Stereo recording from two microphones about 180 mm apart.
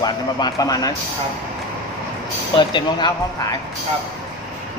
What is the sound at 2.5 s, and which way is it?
Speech, 25° left (ahead or behind).